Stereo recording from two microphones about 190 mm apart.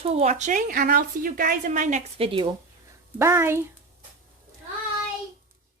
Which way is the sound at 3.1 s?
15° right (ahead or behind).